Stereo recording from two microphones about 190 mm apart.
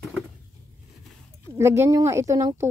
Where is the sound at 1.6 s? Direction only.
15° right (ahead or behind).